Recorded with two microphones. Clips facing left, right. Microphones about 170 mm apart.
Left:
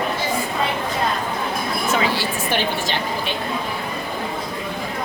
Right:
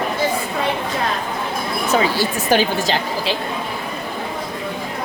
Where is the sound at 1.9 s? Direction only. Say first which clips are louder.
Right 5 dB; 40° right (ahead or behind).